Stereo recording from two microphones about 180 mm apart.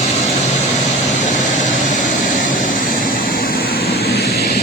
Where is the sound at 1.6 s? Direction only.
50° left (ahead or behind).